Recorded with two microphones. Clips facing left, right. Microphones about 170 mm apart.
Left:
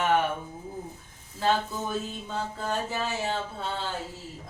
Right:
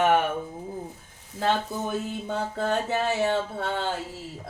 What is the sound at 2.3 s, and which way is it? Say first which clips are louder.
Music: right 5 dB; 65° right (ahead or behind).